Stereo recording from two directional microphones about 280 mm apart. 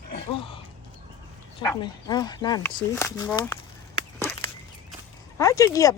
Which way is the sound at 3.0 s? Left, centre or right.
Centre.